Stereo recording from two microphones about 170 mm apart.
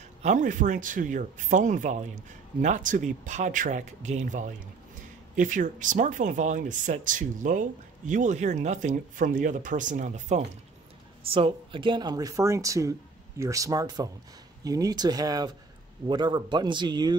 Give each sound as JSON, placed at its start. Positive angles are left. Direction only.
{"t": 0.2, "sound": "speech", "side_deg": -45}